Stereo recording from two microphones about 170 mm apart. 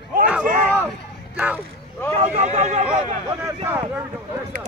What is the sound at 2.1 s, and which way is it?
Speech, 45° right (ahead or behind).